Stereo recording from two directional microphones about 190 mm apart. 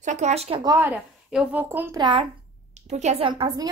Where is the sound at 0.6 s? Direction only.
15° right (ahead or behind).